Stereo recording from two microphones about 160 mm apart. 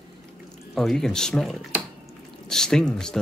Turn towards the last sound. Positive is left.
turn(degrees=5)  # may be behind; listen again after turning